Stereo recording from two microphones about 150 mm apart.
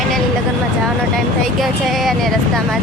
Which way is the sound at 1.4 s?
Centre (ahead or behind).